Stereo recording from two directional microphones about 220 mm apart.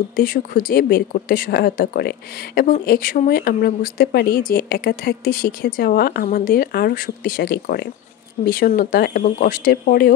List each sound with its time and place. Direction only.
0.1 s speech: 40° left (ahead or behind)